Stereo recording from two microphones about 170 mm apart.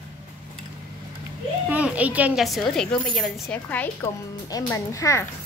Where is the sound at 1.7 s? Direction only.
10° right (ahead or behind).